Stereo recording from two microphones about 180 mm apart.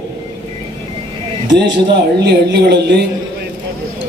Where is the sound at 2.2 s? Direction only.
65° right (ahead or behind).